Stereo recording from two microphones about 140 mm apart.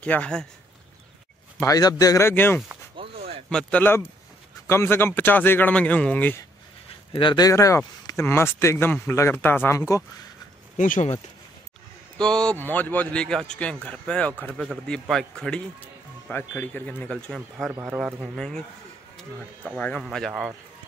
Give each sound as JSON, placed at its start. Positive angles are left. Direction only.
{"t": 0.0, "sound": "speech", "side_deg": 10}
{"t": 1.6, "sound": "speech", "side_deg": 25}
{"t": 7.1, "sound": "speech", "side_deg": 35}
{"t": 10.8, "sound": "speech", "side_deg": 65}
{"t": 12.2, "sound": "a man's voice", "side_deg": 5}
{"t": 17.7, "sound": "a man's voice", "side_deg": -10}
{"t": 19.8, "sound": "a man's voice", "side_deg": 5}